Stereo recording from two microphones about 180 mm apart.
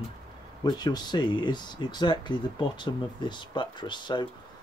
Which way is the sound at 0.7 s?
25° left (ahead or behind).